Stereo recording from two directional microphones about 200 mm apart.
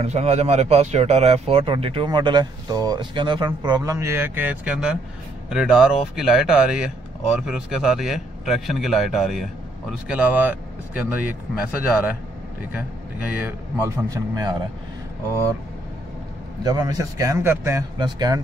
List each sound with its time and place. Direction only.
0.0 s a man's voice: 30° right (ahead or behind); by 11.3 s 10° right (ahead or behind)
13.3 s speech: 10° right (ahead or behind)
16.6 s speech: 20° right (ahead or behind)